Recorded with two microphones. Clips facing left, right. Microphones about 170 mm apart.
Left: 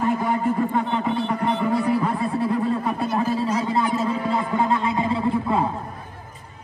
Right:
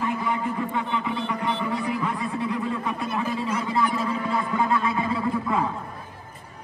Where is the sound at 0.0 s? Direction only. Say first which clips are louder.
Left 5 dB; 45° left (ahead or behind); by 5.7 s 30° left (ahead or behind).